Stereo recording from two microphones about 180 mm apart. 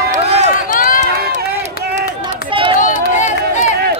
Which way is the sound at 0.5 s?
50° left (ahead or behind).